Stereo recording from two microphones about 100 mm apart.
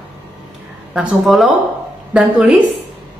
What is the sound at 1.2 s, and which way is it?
A woman's voice, centre (ahead or behind).